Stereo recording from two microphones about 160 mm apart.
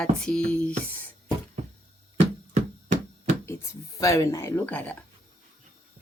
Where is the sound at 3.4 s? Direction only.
20° left (ahead or behind).